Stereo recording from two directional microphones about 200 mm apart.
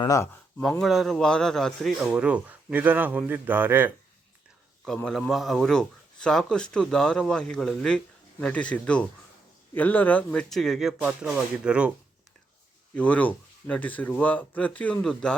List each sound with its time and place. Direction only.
0.0 s speech: 15° left (ahead or behind)
0.8 s speech: centre (ahead or behind)
4.9 s speech: 5° left (ahead or behind)
12.9 s speech: 5° left (ahead or behind)